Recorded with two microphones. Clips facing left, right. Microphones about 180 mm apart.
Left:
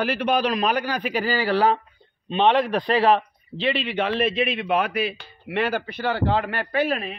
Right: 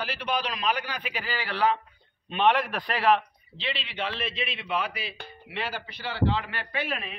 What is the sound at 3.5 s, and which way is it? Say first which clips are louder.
A man's voice: left 10 dB; 50° left (ahead or behind).